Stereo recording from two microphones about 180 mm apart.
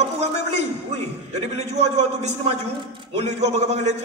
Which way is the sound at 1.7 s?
35° right (ahead or behind).